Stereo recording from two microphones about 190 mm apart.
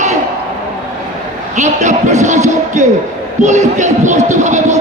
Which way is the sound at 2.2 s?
40° right (ahead or behind).